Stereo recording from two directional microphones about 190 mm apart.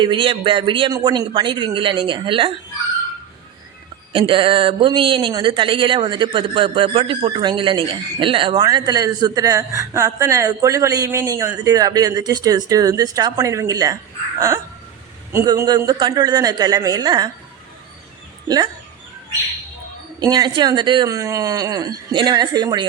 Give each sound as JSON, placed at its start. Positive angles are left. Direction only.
{"t": 0.0, "sound": "speech", "side_deg": -25}
{"t": 4.1, "sound": "speech", "side_deg": -25}
{"t": 18.4, "sound": "speech", "side_deg": -20}
{"t": 20.1, "sound": "speech", "side_deg": -20}